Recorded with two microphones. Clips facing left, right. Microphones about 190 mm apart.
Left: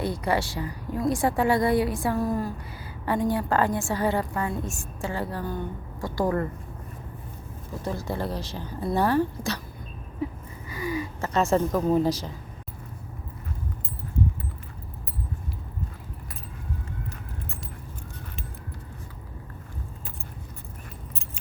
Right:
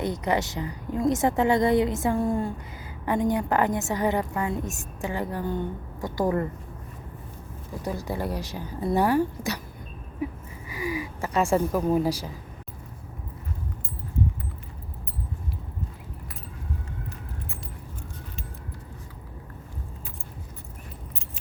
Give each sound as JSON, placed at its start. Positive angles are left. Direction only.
{"t": 0.0, "sound": "a woman's voice", "side_deg": -20}
{"t": 7.9, "sound": "speech", "side_deg": -15}
{"t": 10.7, "sound": "a sound", "side_deg": -15}